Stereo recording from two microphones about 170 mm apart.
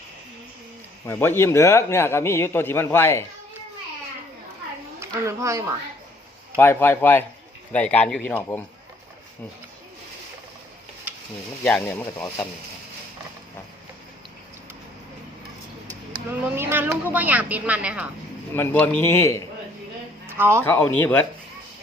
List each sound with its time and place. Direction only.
1.0 s a man's voice: 15° left (ahead or behind)
4.9 s speech: 15° right (ahead or behind)
6.6 s a man's voice: 15° left (ahead or behind)
11.6 s a man's voice: 10° left (ahead or behind)
16.3 s speech: 10° right (ahead or behind)
18.5 s a man's voice: 10° left (ahead or behind)
20.2 s speech: 15° right (ahead or behind)
20.7 s a man's voice: 10° left (ahead or behind)